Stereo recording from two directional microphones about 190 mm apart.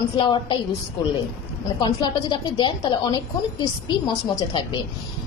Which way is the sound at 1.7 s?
25° left (ahead or behind).